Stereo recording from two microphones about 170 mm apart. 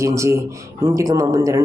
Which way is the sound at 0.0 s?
15° right (ahead or behind).